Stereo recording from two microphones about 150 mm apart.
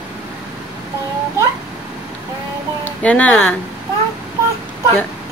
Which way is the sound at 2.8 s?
10° left (ahead or behind).